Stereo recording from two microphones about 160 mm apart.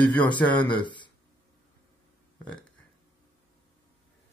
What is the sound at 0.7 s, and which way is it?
Speech, 30° left (ahead or behind).